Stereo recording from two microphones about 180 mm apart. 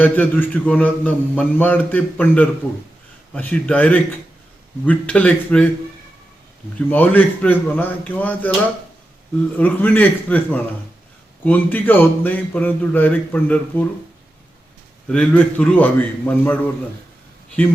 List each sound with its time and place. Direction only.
0.0 s mantra: 10° left (ahead or behind)
6.9 s mantra: 10° left (ahead or behind)
9.6 s mantra: 10° left (ahead or behind)
15.0 s mantra: 5° left (ahead or behind)